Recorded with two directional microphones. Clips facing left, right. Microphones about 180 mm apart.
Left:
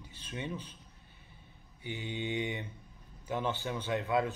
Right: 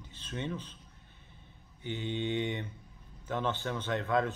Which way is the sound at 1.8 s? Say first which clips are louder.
Right 3 dB; 10° left (ahead or behind).